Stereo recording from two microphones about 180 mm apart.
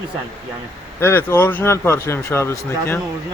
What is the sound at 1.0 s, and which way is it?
Speech, 10° left (ahead or behind).